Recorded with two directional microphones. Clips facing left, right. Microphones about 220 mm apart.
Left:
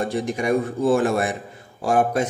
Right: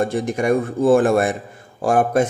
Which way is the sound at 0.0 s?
50° right (ahead or behind).